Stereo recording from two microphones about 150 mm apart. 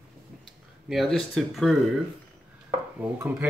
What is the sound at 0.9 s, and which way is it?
Speech, centre (ahead or behind).